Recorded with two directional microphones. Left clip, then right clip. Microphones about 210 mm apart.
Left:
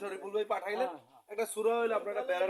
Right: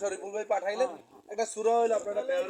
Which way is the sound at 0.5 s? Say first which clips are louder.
Right 5 dB; 10° left (ahead or behind).